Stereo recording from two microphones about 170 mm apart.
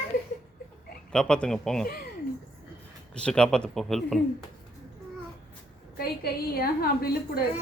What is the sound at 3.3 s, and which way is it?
Speech, 5° left (ahead or behind).